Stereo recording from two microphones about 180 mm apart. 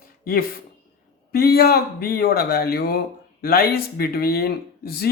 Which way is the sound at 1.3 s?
60° left (ahead or behind).